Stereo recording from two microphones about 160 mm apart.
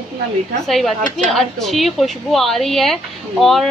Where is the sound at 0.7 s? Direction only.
Centre (ahead or behind).